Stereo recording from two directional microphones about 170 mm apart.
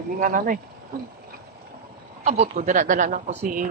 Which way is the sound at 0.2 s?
55° right (ahead or behind).